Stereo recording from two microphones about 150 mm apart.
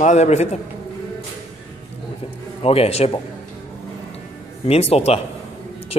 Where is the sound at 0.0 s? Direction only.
50° left (ahead or behind).